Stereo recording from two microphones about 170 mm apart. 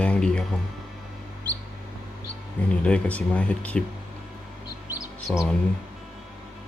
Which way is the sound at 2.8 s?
5° left (ahead or behind).